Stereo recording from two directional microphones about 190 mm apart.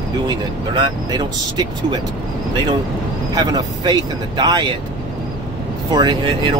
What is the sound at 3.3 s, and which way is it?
Speech, 20° right (ahead or behind).